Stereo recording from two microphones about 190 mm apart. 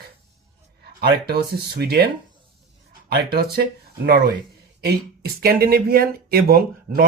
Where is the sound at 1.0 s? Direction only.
55° right (ahead or behind).